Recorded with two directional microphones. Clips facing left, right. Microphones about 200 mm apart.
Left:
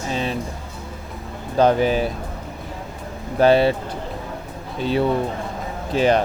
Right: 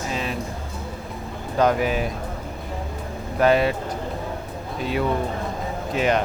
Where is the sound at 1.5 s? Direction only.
30° left (ahead or behind).